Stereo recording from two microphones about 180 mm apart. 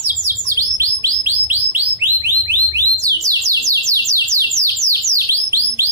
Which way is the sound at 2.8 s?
20° right (ahead or behind).